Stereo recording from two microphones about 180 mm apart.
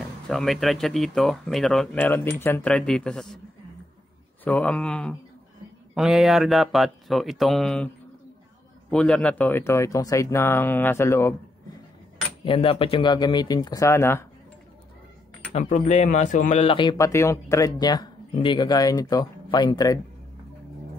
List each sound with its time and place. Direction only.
0.3 s speech: centre (ahead or behind)
4.5 s speech: 5° left (ahead or behind)
8.9 s speech: 5° left (ahead or behind)
12.4 s speech: 30° left (ahead or behind); by 14.2 s 15° left (ahead or behind)
15.5 s speech: 40° left (ahead or behind)
16.6 s speech: 25° left (ahead or behind)